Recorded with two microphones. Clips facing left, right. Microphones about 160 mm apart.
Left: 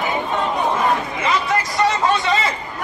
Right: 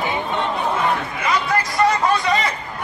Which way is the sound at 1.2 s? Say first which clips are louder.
Even; 25° left (ahead or behind).